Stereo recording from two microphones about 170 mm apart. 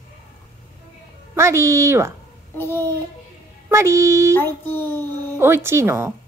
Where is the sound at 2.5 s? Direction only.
15° left (ahead or behind).